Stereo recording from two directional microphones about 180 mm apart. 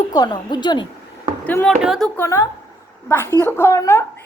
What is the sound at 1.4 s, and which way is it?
Speech, 10° left (ahead or behind).